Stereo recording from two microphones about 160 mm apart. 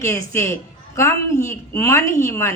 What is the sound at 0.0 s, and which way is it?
Speech, 20° left (ahead or behind).